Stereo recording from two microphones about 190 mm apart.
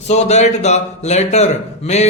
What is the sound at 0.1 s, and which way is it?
A man's voice, 35° left (ahead or behind).